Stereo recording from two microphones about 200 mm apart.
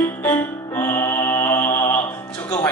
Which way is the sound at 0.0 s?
10° left (ahead or behind).